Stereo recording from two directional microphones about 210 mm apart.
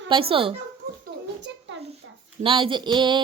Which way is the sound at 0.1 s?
25° right (ahead or behind).